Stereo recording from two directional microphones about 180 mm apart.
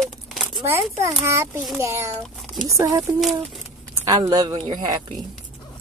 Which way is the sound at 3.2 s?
Centre (ahead or behind).